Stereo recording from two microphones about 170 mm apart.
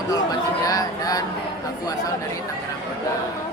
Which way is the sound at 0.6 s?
20° left (ahead or behind).